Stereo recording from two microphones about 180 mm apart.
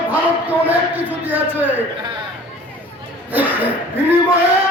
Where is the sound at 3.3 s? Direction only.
10° right (ahead or behind).